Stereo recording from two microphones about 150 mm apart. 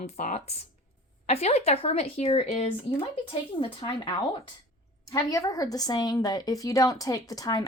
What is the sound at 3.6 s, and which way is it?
Speech, 35° left (ahead or behind).